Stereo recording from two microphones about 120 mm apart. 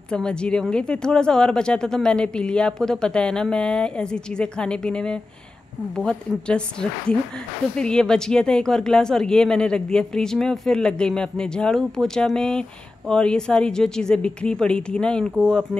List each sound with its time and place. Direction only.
0.1 s a woman's voice: 5° left (ahead or behind)